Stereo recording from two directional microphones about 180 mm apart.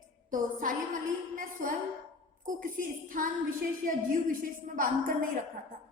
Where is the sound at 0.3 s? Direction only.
50° right (ahead or behind).